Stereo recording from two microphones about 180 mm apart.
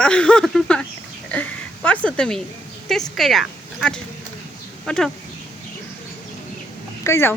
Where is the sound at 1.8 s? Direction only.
5° left (ahead or behind).